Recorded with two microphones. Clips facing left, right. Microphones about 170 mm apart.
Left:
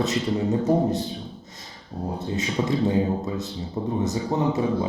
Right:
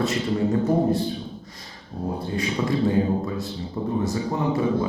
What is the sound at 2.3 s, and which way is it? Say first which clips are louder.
Speech: even; 20° left (ahead or behind).